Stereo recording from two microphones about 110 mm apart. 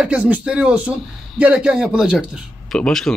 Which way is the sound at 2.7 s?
5° left (ahead or behind).